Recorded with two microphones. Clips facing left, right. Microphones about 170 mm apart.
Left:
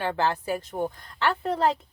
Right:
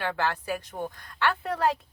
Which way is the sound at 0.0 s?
30° left (ahead or behind).